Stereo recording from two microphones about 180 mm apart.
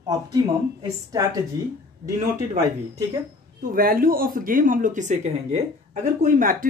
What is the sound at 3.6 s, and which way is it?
Speech, 50° right (ahead or behind).